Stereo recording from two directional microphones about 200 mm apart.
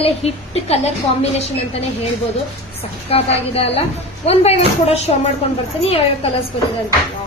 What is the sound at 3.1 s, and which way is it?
A woman's voice, 30° left (ahead or behind).